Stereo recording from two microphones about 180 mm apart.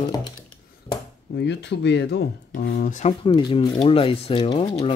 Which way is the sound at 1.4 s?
75° left (ahead or behind).